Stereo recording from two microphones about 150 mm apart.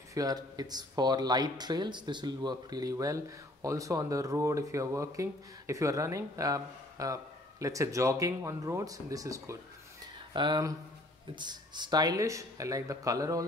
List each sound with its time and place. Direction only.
0.1 s speech: 25° right (ahead or behind)